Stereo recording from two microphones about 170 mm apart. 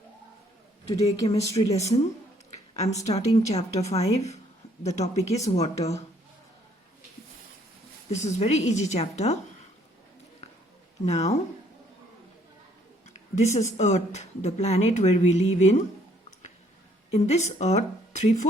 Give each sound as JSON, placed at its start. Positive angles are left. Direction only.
{"t": 1.3, "sound": "speech", "side_deg": 40}
{"t": 2.5, "sound": "a sound", "side_deg": 40}
{"t": 3.1, "sound": "speech", "side_deg": 40}
{"t": 8.1, "sound": "speech", "side_deg": 40}
{"t": 11.0, "sound": "speech", "side_deg": 40}
{"t": 13.3, "sound": "speech", "side_deg": 45}
{"t": 17.1, "sound": "speech", "side_deg": 40}